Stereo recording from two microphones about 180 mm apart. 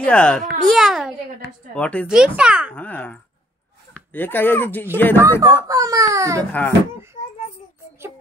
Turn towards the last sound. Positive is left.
turn(degrees=10)  # may be behind; listen again after turning